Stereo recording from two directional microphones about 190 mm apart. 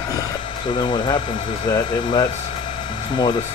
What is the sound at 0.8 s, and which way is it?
Speech, 25° left (ahead or behind).